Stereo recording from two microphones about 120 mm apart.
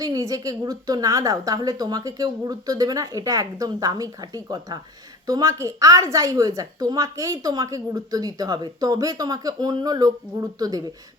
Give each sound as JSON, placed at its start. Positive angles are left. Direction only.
{"t": 0.0, "sound": "a woman's voice", "side_deg": -30}